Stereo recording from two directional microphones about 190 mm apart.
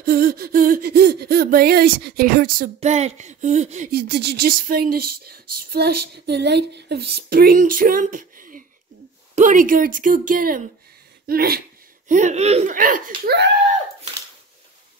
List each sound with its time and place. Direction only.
0.0 s speech: 50° right (ahead or behind)
2.8 s speech: 35° right (ahead or behind)
3.9 s speech: 60° right (ahead or behind)
12.1 s speech: 40° right (ahead or behind)